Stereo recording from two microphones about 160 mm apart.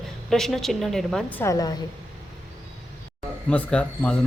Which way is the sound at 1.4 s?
20° left (ahead or behind).